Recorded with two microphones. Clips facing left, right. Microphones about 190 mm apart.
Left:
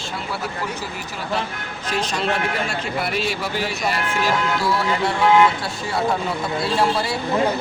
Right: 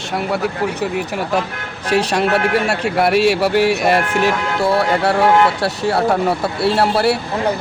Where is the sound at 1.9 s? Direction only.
65° right (ahead or behind).